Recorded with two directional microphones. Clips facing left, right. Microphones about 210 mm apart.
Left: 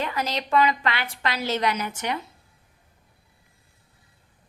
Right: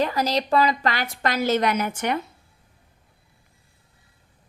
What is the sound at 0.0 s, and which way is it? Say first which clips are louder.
A woman's voice: right 5 dB; 35° right (ahead or behind).